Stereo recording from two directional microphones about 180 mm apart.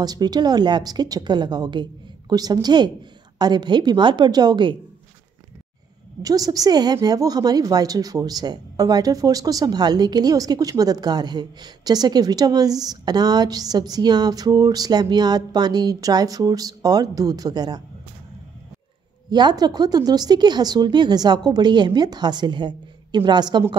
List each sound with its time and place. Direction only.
0.0 s a woman's voice: 20° right (ahead or behind)
6.2 s a woman's voice: 20° right (ahead or behind)
19.3 s a woman's voice: 25° right (ahead or behind)